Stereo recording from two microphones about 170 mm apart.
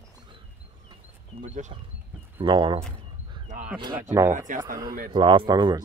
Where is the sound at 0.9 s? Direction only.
40° right (ahead or behind).